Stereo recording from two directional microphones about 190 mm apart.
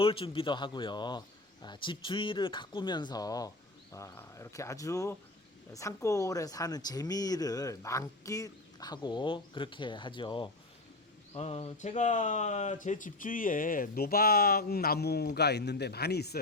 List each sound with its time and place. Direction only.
0.0 s speech: 30° left (ahead or behind); by 16.4 s 60° left (ahead or behind)